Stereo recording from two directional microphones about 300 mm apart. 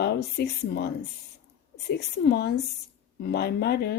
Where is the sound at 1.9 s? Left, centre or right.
Left.